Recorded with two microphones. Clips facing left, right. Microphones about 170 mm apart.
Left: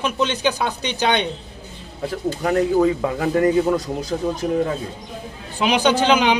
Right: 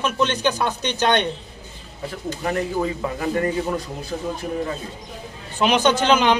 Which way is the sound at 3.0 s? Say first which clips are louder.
Left 5 dB; 60° left (ahead or behind).